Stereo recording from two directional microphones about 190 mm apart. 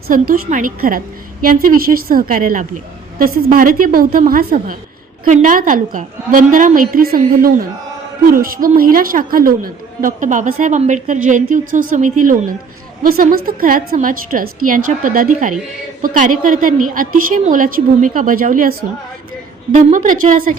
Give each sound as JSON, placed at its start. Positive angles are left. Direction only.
{"t": 0.1, "sound": "a woman's voice", "side_deg": -45}